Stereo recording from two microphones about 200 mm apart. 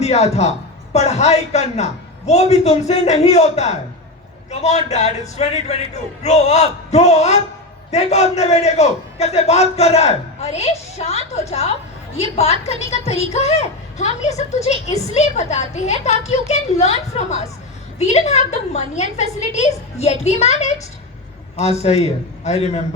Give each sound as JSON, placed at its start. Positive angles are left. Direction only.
{"t": 0.0, "sound": "a woman's voice", "side_deg": 35}